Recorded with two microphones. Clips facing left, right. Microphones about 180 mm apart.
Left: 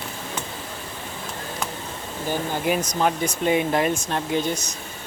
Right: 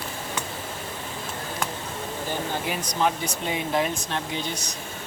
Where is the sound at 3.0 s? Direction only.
55° left (ahead or behind).